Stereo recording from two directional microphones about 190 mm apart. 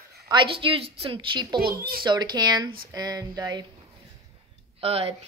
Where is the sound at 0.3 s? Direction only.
25° right (ahead or behind).